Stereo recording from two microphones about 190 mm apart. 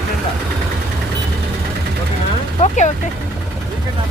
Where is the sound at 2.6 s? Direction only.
40° left (ahead or behind).